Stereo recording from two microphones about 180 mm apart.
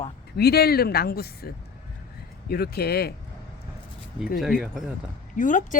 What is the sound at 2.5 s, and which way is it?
Speech, 60° left (ahead or behind).